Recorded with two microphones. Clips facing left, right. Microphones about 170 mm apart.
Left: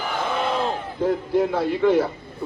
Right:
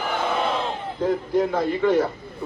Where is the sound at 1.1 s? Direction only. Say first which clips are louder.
Left 1 dB; 5° left (ahead or behind).